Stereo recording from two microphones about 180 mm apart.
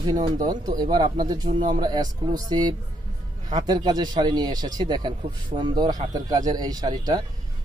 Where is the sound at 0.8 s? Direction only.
25° right (ahead or behind).